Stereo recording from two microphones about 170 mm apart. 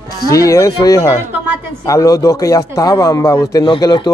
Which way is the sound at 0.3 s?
20° left (ahead or behind).